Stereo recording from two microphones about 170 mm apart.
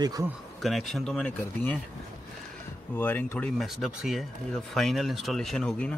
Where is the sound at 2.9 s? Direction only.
10° left (ahead or behind).